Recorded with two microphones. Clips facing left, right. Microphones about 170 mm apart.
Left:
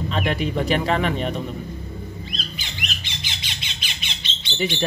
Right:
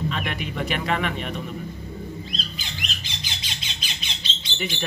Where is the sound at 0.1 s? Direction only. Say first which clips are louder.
Left 6 dB; 35° left (ahead or behind).